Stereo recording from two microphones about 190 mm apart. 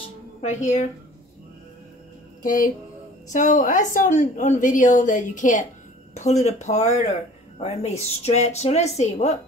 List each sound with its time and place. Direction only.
0.4 s speech: 40° left (ahead or behind)
3.3 s speech: 40° left (ahead or behind)